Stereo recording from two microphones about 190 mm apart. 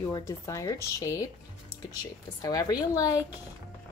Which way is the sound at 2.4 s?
20° left (ahead or behind).